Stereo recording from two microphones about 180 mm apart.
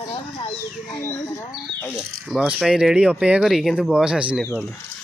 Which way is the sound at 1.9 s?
5° right (ahead or behind).